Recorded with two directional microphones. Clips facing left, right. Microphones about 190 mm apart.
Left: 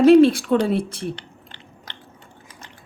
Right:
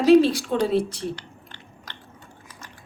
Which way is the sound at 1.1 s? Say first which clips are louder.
Even; 25° left (ahead or behind).